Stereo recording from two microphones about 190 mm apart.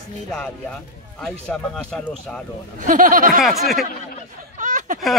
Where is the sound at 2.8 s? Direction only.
45° right (ahead or behind).